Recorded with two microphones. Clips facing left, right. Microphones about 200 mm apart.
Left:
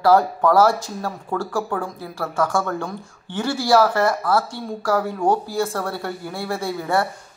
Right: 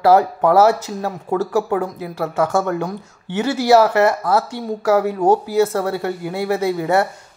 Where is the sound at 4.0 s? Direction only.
20° right (ahead or behind).